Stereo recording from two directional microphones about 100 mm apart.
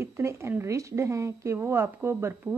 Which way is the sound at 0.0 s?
30° right (ahead or behind).